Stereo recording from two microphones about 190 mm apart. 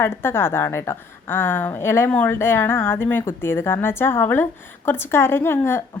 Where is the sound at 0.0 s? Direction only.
10° left (ahead or behind).